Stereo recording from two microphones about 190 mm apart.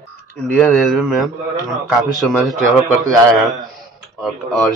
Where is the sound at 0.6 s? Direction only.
Centre (ahead or behind).